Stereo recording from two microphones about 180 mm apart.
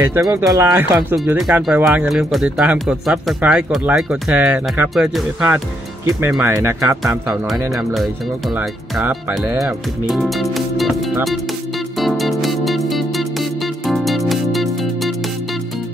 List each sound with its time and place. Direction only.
0.0 s speech: 20° right (ahead or behind)
7.4 s speech: centre (ahead or behind)
12.0 s music: centre (ahead or behind)